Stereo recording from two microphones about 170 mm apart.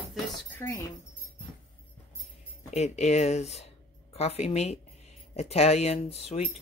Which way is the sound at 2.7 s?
40° left (ahead or behind).